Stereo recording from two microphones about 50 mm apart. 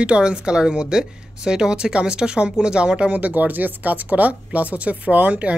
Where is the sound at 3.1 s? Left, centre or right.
Right.